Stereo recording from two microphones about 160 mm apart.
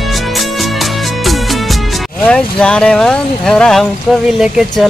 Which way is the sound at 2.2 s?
5° left (ahead or behind).